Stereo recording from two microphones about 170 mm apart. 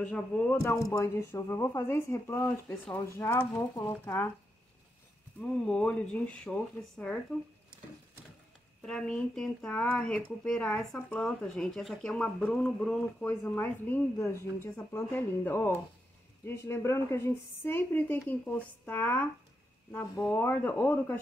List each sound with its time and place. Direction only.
0.0 s speech: 10° left (ahead or behind)
0.8 s speech: 20° left (ahead or behind)
5.4 s speech: 5° left (ahead or behind)
8.8 s speech: 5° left (ahead or behind)